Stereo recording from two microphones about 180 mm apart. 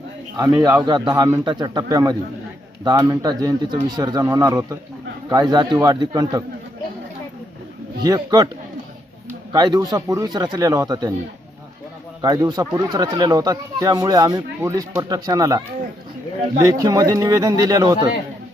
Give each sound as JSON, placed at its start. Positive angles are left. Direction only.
{"t": 0.3, "sound": "speech", "side_deg": -15}
{"t": 8.0, "sound": "speech", "side_deg": -20}
{"t": 9.5, "sound": "speech", "side_deg": -20}
{"t": 12.2, "sound": "speech", "side_deg": -25}